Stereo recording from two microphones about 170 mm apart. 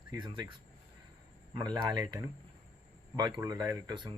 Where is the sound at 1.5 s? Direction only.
25° right (ahead or behind).